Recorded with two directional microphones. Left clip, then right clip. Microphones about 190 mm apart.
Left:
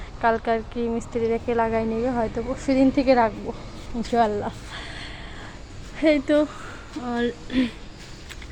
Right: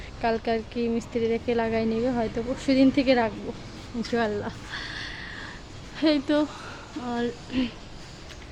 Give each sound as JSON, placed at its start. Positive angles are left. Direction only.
{"t": 0.2, "sound": "a woman's voice", "side_deg": -15}
{"t": 6.0, "sound": "a woman's voice", "side_deg": 0}